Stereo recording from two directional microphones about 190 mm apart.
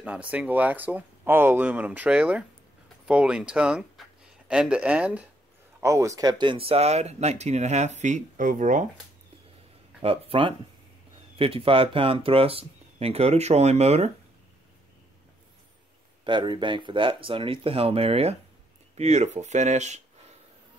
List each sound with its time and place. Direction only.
0.0 s speech: 5° right (ahead or behind); by 8.8 s 45° right (ahead or behind)
10.0 s speech: 30° right (ahead or behind)
16.3 s speech: 25° right (ahead or behind)